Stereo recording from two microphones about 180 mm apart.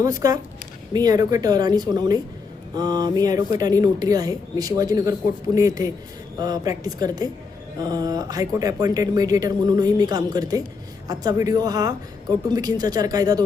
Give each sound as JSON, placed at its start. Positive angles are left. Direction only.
{"t": 0.0, "sound": "speech", "side_deg": -20}